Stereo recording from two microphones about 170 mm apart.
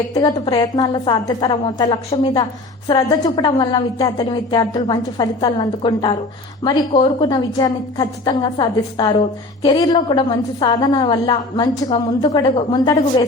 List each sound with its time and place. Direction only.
0.1 s a woman's voice: 25° left (ahead or behind)